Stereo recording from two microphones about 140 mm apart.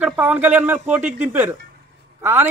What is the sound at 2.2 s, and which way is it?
Speech, 15° right (ahead or behind).